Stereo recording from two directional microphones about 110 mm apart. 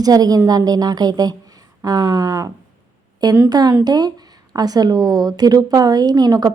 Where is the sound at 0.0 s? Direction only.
35° right (ahead or behind).